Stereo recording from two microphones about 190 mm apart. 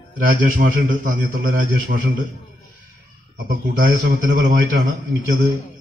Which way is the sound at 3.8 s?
45° right (ahead or behind).